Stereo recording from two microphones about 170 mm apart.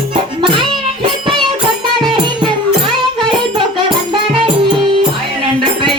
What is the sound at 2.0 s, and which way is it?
Music, 25° right (ahead or behind).